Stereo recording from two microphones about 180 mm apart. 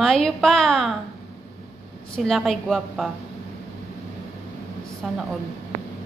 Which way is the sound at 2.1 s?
Centre (ahead or behind).